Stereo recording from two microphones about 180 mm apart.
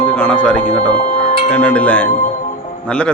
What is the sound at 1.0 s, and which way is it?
Music, 35° left (ahead or behind).